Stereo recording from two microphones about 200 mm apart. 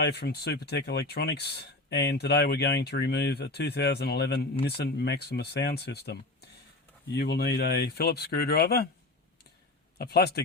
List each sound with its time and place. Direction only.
0.0 s speech: 55° left (ahead or behind)
10.0 s speech: 55° left (ahead or behind)